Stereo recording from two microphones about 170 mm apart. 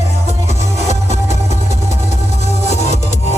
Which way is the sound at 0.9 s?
45° left (ahead or behind).